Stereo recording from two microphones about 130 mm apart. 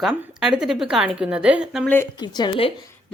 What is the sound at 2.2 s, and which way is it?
Speech, 35° left (ahead or behind).